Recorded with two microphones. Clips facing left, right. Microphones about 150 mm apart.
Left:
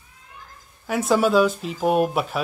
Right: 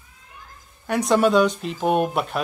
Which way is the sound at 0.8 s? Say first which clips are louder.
Right 1 dB; 5° left (ahead or behind).